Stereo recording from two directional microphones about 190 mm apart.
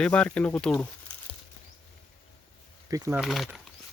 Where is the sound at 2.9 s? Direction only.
15° right (ahead or behind).